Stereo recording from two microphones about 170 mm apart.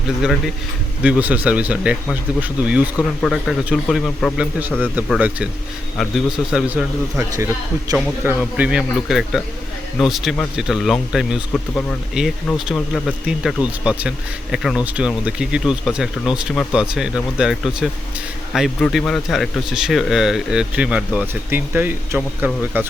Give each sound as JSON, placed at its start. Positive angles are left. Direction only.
{"t": 1.0, "sound": "speech", "side_deg": -5}
{"t": 7.2, "sound": "speech", "side_deg": -15}
{"t": 8.4, "sound": "speech", "side_deg": -5}
{"t": 11.7, "sound": "speech", "side_deg": 10}
{"t": 12.2, "sound": "speech", "side_deg": -5}